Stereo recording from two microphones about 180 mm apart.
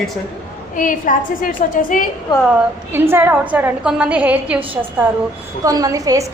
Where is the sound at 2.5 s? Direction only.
10° right (ahead or behind).